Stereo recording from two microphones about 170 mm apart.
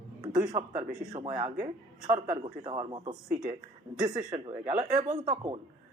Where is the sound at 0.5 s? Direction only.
35° right (ahead or behind).